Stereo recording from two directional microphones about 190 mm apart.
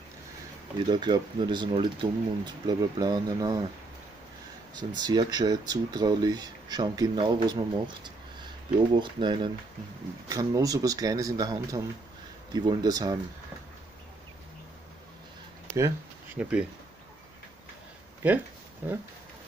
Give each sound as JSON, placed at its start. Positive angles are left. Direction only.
{"t": 0.8, "sound": "speech", "side_deg": -25}
{"t": 4.7, "sound": "speech", "side_deg": -20}
{"t": 16.3, "sound": "speech", "side_deg": -5}
{"t": 18.2, "sound": "speech", "side_deg": -10}